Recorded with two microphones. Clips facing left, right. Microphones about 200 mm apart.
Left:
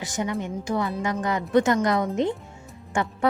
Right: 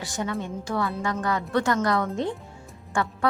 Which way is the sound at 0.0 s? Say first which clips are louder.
Left 2 dB; 15° left (ahead or behind).